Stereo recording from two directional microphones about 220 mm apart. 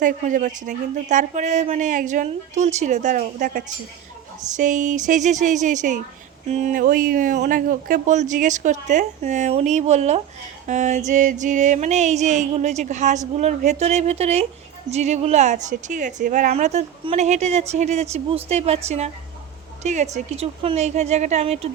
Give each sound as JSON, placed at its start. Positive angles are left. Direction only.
{"t": 0.0, "sound": "music", "side_deg": -35}
{"t": 18.4, "sound": "a woman's voice", "side_deg": -30}
{"t": 19.8, "sound": "music", "side_deg": -30}